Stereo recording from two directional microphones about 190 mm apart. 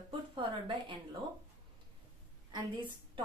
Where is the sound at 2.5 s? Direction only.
25° right (ahead or behind).